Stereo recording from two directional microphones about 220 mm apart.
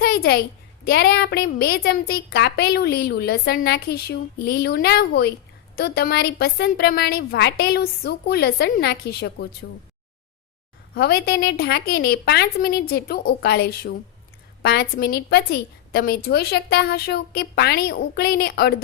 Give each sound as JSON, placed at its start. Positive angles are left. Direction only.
{"t": 0.0, "sound": "a sound", "side_deg": 45}
{"t": 0.9, "sound": "a woman's voice", "side_deg": 45}
{"t": 10.9, "sound": "a woman's voice", "side_deg": 45}